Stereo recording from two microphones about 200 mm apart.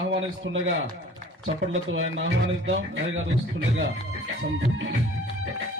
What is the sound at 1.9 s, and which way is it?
Speech, 70° right (ahead or behind).